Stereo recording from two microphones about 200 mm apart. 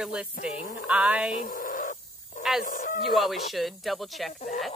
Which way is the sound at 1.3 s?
45° left (ahead or behind).